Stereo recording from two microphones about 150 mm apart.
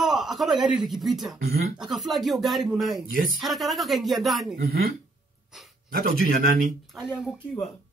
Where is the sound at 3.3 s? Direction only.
Centre (ahead or behind).